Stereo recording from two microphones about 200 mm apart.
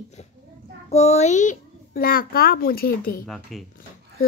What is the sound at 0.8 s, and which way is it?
A child's voice, 35° left (ahead or behind).